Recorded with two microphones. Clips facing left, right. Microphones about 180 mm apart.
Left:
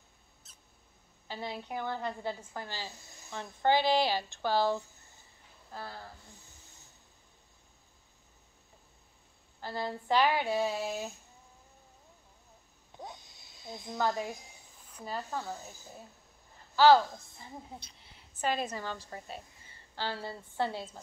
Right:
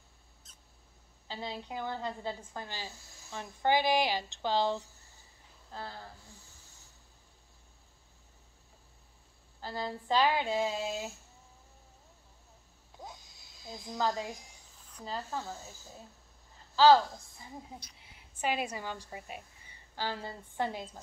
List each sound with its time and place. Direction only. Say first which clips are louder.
1.2 s a sound: left 1 dB; 20° right (ahead or behind)
1.7 s speech: left 2 dB; 20° right (ahead or behind)
9.6 s a sound: left 1 dB; 15° right (ahead or behind)
10.0 s speech: left 1 dB; 20° right (ahead or behind)
10.9 s speech: left 1 dB; 15° left (ahead or behind)
13.0 s a sound: left 2 dB; centre (ahead or behind)
14.9 s speech: left 1 dB; 10° left (ahead or behind)
16.7 s a woman's voice: even; 15° right (ahead or behind)
18.0 s a woman's voice: left 1 dB; 10° right (ahead or behind)